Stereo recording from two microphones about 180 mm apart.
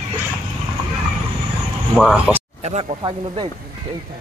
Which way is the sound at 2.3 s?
35° right (ahead or behind).